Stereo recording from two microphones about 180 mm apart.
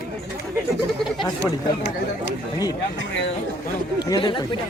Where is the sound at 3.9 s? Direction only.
25° left (ahead or behind).